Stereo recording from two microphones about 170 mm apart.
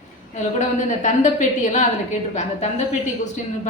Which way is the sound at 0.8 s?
45° left (ahead or behind).